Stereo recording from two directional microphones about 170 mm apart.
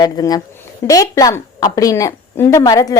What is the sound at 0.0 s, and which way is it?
Speech, 25° left (ahead or behind).